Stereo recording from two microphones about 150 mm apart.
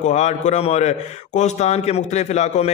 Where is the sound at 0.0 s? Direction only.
50° left (ahead or behind).